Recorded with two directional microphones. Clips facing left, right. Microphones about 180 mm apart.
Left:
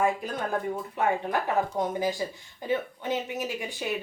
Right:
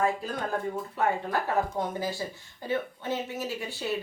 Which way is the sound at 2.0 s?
15° left (ahead or behind).